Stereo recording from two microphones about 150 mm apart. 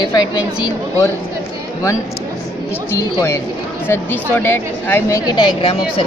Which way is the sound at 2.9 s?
20° left (ahead or behind).